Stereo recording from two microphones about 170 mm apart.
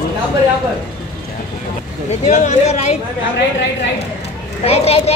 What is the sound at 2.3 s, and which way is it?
Speech, 45° left (ahead or behind).